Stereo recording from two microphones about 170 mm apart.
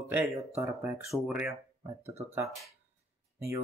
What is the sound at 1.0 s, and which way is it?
Speech, 5° right (ahead or behind).